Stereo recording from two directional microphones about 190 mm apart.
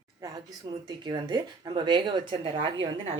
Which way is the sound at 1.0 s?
25° right (ahead or behind).